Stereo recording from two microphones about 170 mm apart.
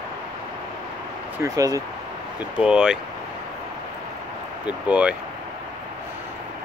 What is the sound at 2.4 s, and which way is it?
Speech, 5° right (ahead or behind).